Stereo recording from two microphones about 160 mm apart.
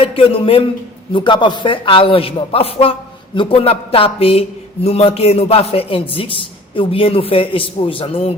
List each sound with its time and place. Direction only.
0.0 s a man's voice: 35° left (ahead or behind)